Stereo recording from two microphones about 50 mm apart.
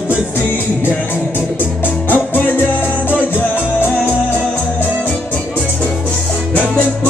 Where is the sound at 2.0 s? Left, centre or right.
Left.